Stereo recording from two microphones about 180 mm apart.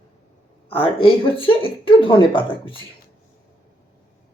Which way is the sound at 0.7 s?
30° left (ahead or behind).